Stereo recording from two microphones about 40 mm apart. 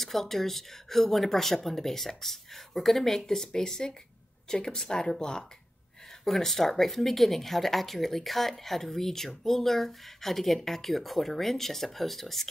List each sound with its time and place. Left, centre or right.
0.0 s speech: centre
6.2 s speech: centre